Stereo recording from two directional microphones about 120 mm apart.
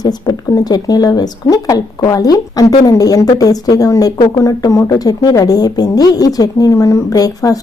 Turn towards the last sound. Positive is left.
turn(degrees=30)  # may be behind; listen again after turning